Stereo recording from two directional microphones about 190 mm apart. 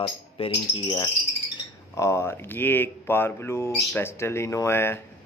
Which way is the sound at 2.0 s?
15° left (ahead or behind).